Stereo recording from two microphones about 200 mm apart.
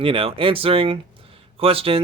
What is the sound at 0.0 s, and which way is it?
Speech, 25° right (ahead or behind).